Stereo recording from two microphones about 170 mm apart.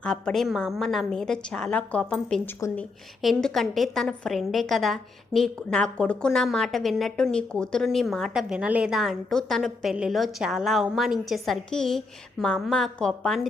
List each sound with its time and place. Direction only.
0.0 s a woman's voice: 5° left (ahead or behind)
2.6 s speech: 15° left (ahead or behind)
3.2 s a woman's voice: centre (ahead or behind)